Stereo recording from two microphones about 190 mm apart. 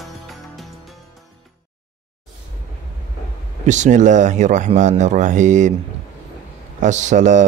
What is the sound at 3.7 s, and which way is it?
Speech, 40° right (ahead or behind).